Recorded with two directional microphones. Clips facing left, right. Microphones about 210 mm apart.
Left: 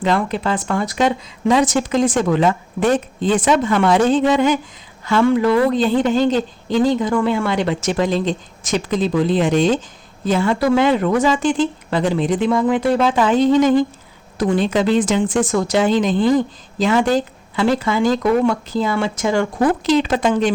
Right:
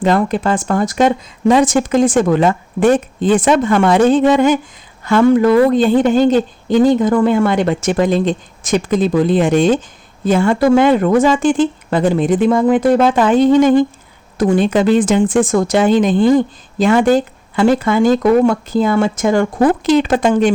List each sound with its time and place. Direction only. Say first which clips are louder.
0.0 s speech: right 4 dB; 45° right (ahead or behind)